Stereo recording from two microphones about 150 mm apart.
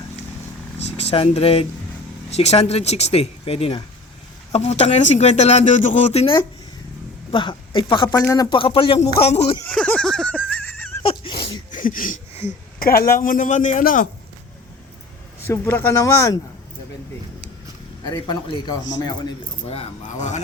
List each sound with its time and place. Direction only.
0.8 s a man's voice: 45° left (ahead or behind)
7.3 s speech: 35° left (ahead or behind)
8.2 s a man's voice: 25° left (ahead or behind)
8.4 s speech: 35° left (ahead or behind)
9.6 s a sound: 5° left (ahead or behind)
11.0 s a sound: 40° left (ahead or behind)
11.7 s a sound: 65° left (ahead or behind)
12.3 s a sound: 45° left (ahead or behind)
12.8 s a man's voice: 75° left (ahead or behind)
15.4 s a man's voice: 15° left (ahead or behind)
18.0 s a man's voice: 30° left (ahead or behind)
19.6 s a man's voice: 40° left (ahead or behind)